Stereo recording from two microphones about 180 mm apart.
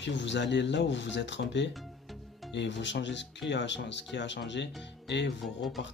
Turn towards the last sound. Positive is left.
turn(degrees=0)  # may be behind; listen again after turning